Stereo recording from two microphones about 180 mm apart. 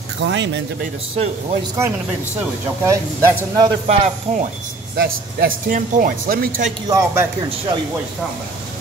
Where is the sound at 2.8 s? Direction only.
15° right (ahead or behind).